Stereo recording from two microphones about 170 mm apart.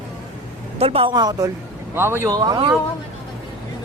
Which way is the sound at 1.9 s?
15° right (ahead or behind).